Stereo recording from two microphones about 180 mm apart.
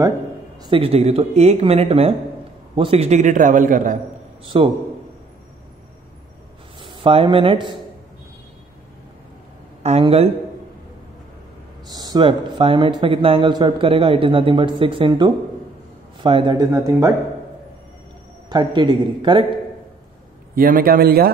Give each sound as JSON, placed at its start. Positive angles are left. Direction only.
{"t": 0.6, "sound": "a man's voice", "side_deg": -30}
{"t": 4.5, "sound": "a man's voice", "side_deg": -30}
{"t": 6.8, "sound": "speech", "side_deg": -30}
{"t": 9.8, "sound": "speech", "side_deg": -35}
{"t": 11.9, "sound": "a man's voice", "side_deg": -20}
{"t": 18.5, "sound": "a man's voice", "side_deg": -25}
{"t": 20.5, "sound": "a man's voice", "side_deg": -55}